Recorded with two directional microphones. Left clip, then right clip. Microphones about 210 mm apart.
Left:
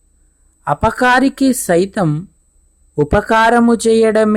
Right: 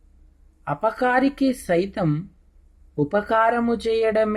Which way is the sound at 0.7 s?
50° left (ahead or behind).